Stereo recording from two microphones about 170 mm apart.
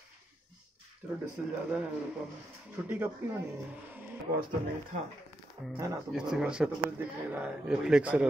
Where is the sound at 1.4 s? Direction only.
5° right (ahead or behind).